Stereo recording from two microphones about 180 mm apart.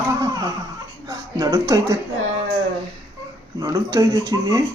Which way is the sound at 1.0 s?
20° right (ahead or behind).